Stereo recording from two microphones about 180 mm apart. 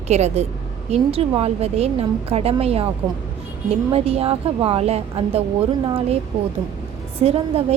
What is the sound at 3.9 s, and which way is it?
A woman's voice, 35° right (ahead or behind).